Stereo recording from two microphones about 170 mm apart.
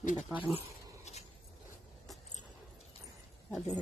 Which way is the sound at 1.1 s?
40° left (ahead or behind).